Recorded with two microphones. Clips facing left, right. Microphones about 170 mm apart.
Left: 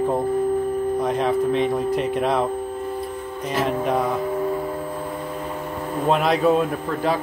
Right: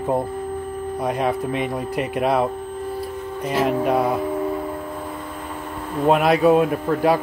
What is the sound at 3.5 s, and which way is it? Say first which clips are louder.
Speech: right 2 dB; 5° right (ahead or behind).